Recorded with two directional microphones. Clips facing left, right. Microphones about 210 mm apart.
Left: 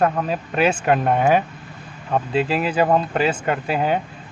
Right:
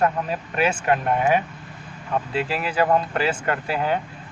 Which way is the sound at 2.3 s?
20° left (ahead or behind).